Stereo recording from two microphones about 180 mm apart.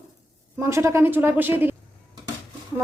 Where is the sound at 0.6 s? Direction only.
15° right (ahead or behind).